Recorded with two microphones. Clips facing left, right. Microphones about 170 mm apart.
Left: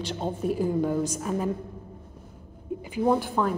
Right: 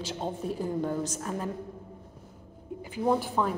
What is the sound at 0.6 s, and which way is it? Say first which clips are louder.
Speech: left 5 dB; 5° left (ahead or behind).